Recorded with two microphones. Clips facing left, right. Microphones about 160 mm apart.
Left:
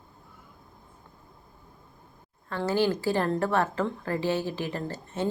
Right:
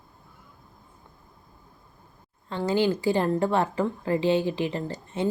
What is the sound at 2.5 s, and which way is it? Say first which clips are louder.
Speech: right 2 dB; 20° right (ahead or behind).